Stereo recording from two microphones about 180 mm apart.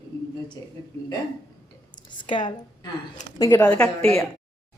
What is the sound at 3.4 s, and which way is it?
Speech, 15° left (ahead or behind).